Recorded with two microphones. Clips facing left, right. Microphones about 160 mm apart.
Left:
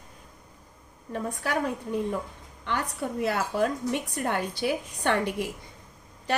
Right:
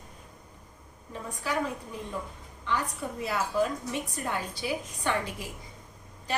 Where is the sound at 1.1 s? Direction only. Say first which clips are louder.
Left 3 dB; 60° left (ahead or behind).